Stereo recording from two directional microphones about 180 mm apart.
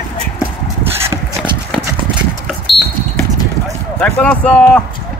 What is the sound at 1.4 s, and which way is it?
Clip-clop, 5° right (ahead or behind).